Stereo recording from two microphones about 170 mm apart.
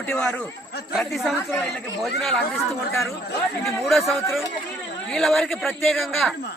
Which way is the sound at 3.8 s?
Centre (ahead or behind).